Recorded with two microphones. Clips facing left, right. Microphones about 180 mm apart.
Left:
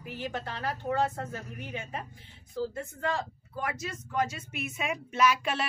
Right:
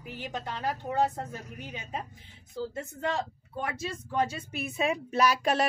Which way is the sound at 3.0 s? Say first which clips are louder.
Right 1 dB; 25° right (ahead or behind).